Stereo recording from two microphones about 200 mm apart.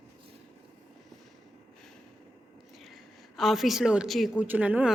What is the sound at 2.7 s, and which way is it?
A woman's voice, centre (ahead or behind).